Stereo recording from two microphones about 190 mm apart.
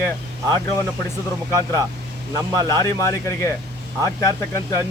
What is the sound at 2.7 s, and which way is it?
Speech, 15° left (ahead or behind).